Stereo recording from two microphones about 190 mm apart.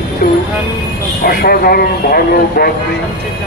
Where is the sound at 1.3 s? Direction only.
50° left (ahead or behind).